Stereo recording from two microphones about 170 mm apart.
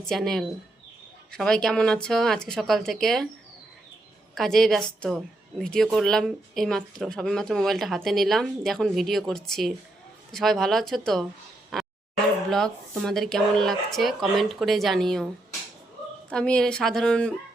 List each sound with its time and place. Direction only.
0.0 s a woman's voice: 5° left (ahead or behind)
4.4 s a woman's voice: centre (ahead or behind)
16.3 s a woman's voice: 5° left (ahead or behind)